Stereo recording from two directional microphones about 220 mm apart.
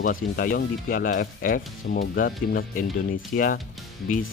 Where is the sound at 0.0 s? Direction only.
40° left (ahead or behind).